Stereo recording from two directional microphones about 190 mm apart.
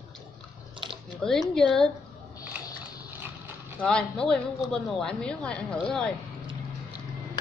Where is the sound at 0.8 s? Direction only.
25° right (ahead or behind).